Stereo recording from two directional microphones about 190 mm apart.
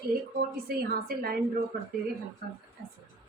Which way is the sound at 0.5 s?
50° right (ahead or behind).